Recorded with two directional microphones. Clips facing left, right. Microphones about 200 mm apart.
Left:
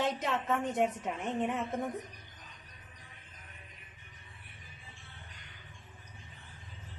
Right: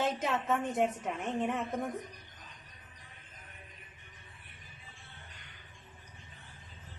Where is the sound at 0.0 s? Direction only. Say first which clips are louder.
Even; centre (ahead or behind).